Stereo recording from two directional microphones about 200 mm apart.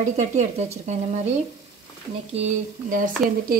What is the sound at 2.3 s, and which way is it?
Speech, 35° right (ahead or behind).